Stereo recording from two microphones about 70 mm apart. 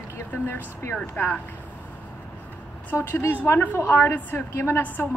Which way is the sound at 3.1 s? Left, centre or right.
Left.